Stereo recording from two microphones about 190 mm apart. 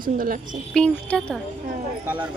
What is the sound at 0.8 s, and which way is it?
Speech, 5° left (ahead or behind).